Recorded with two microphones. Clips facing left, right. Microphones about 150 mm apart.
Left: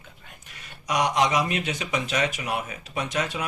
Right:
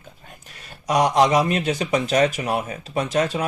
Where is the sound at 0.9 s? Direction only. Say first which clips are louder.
Right 6 dB; 35° right (ahead or behind).